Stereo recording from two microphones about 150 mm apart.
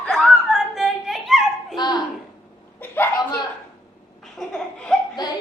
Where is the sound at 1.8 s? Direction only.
30° left (ahead or behind).